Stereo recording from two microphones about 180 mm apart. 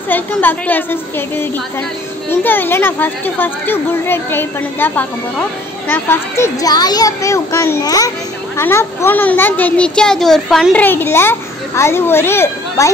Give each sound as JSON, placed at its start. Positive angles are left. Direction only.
{"t": 0.1, "sound": "a child's voice", "side_deg": 10}